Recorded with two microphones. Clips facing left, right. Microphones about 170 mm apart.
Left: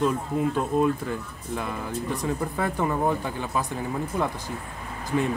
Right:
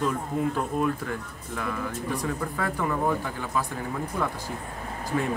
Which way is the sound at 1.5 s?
20° left (ahead or behind).